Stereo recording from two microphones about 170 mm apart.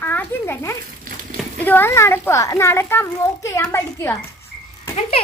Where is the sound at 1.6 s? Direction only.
10° left (ahead or behind).